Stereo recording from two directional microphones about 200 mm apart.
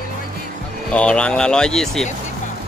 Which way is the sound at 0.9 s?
5° left (ahead or behind).